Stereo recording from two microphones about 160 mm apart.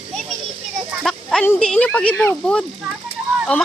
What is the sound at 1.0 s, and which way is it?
Speech, 5° left (ahead or behind).